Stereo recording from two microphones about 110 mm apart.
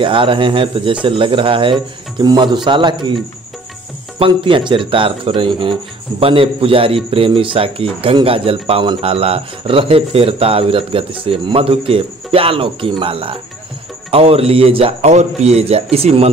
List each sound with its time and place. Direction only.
0.0 s speech: 50° right (ahead or behind)
4.2 s speech: 50° right (ahead or behind); by 16.3 s 65° right (ahead or behind)